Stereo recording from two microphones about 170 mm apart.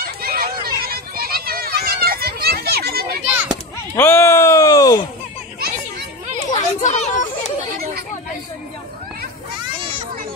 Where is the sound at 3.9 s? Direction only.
15° left (ahead or behind).